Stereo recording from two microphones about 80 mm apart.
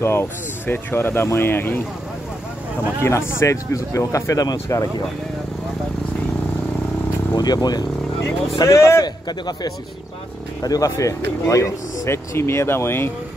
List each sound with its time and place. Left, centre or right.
0.0 s speech: left
3.0 s speech: left
7.3 s a man's voice: left
8.5 s speech: left
9.0 s a man's voice: left